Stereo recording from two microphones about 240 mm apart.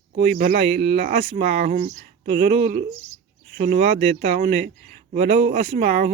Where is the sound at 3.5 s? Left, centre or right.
Right.